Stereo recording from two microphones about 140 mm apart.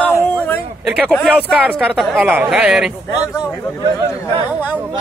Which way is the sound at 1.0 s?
5° left (ahead or behind).